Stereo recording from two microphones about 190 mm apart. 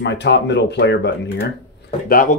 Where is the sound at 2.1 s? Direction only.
45° left (ahead or behind).